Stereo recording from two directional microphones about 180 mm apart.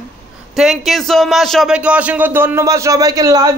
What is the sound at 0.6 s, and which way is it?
A man's voice, centre (ahead or behind).